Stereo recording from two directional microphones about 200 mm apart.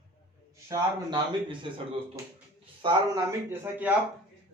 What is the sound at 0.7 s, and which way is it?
Speech, 25° right (ahead or behind).